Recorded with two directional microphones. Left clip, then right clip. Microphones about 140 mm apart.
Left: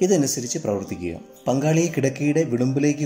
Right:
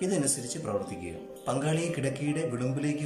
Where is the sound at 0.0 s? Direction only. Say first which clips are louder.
Left 10 dB; 50° left (ahead or behind).